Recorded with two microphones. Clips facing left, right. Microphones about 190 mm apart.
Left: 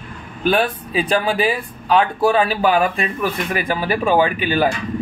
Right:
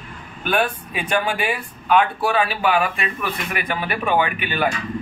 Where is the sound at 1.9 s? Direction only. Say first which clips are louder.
Left 3 dB; 35° left (ahead or behind).